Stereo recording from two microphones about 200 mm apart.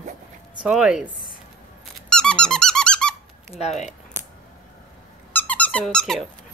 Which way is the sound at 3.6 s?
35° left (ahead or behind).